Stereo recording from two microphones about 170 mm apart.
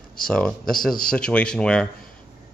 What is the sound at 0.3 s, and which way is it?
Speech, 5° left (ahead or behind).